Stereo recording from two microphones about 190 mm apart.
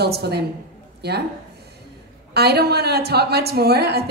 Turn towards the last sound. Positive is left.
turn(degrees=-60)  # may be behind; listen again after turning